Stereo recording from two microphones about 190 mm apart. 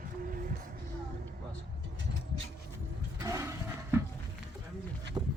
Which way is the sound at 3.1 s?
15° right (ahead or behind).